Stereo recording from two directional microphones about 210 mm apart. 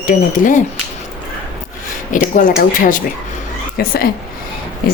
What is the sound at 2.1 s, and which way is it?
Speech, 40° left (ahead or behind).